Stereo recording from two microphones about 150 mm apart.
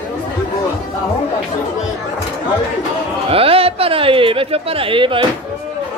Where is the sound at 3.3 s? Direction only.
40° right (ahead or behind).